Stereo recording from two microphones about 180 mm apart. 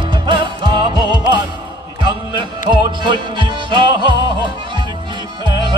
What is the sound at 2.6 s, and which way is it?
Music, 25° right (ahead or behind).